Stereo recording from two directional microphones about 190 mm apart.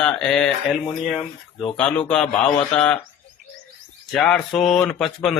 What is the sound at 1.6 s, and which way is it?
Speech, 5° left (ahead or behind).